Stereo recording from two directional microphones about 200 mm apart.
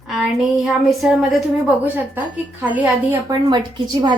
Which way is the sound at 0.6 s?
Centre (ahead or behind).